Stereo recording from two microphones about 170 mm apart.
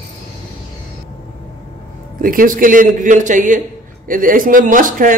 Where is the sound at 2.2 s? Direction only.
55° right (ahead or behind).